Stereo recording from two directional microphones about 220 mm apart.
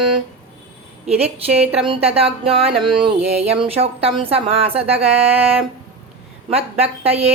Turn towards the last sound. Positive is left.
turn(degrees=-25)  # may be behind; listen again after turning